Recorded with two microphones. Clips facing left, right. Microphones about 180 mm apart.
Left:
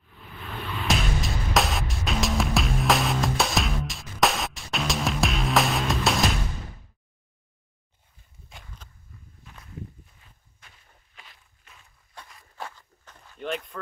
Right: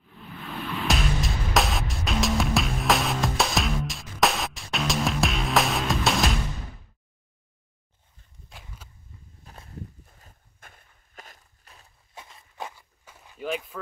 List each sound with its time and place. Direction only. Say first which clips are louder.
0.7 s music: even; centre (ahead or behind)
8.5 s a sound: even; centre (ahead or behind)
9.4 s walk: even; 40° right (ahead or behind)
12.3 s walk: right 1 dB; 20° right (ahead or behind); by 13.7 s 5° right (ahead or behind)